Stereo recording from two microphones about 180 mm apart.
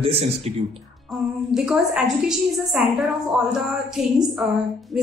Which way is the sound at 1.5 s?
5° right (ahead or behind).